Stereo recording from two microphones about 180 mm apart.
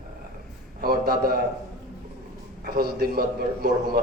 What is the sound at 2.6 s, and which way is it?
A man's voice, 60° right (ahead or behind).